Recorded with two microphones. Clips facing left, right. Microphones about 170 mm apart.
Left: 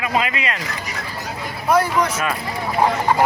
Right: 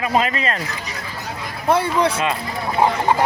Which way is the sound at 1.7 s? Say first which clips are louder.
Even; 30° right (ahead or behind).